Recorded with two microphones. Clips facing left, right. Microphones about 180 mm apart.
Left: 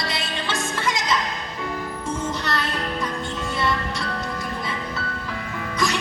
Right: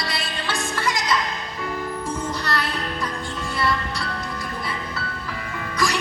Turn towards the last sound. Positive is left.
turn(degrees=20)  # may be behind; listen again after turning